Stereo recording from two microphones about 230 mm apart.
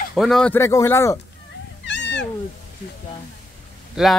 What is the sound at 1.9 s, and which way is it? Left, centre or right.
Cat, left.